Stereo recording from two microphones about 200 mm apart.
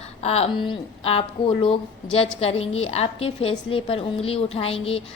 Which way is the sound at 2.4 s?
30° left (ahead or behind).